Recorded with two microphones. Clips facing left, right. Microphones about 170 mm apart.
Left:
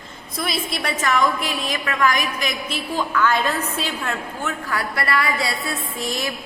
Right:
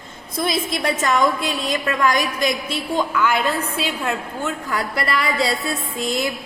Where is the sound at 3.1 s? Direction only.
10° right (ahead or behind).